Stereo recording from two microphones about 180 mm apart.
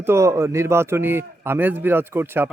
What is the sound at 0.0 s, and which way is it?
A man's voice, 15° right (ahead or behind).